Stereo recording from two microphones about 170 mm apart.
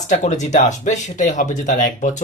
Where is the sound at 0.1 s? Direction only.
45° left (ahead or behind).